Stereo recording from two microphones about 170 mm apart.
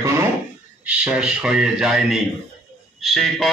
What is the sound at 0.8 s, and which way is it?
A man's voice, 5° right (ahead or behind).